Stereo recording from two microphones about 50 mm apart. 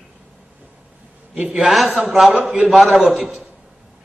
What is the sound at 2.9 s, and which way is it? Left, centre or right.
Speech, centre.